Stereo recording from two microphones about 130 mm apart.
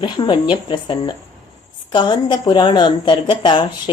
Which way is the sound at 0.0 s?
40° left (ahead or behind).